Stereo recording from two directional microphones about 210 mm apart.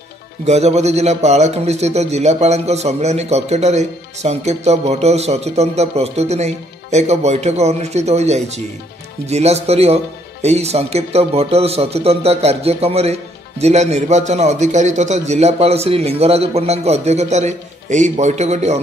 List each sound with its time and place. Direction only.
0.5 s speech: 30° right (ahead or behind)